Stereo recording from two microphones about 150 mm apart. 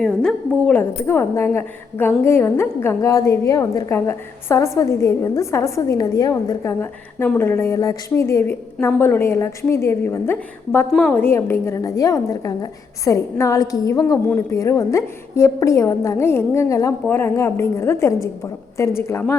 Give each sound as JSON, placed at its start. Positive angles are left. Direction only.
{"t": 0.0, "sound": "a woman's voice", "side_deg": 5}